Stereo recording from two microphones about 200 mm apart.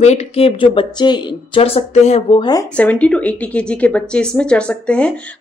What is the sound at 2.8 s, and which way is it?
Speech, 5° left (ahead or behind).